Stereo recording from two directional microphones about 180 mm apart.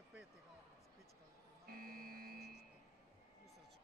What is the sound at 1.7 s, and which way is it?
Vehicle, 55° right (ahead or behind).